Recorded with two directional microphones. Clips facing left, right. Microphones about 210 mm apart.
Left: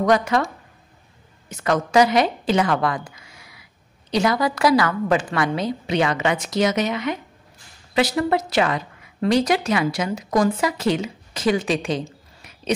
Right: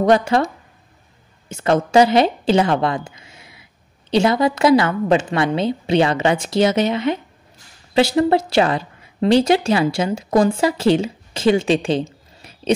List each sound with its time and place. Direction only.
0.0 s a woman's voice: 30° right (ahead or behind)
1.5 s a woman's voice: 30° right (ahead or behind)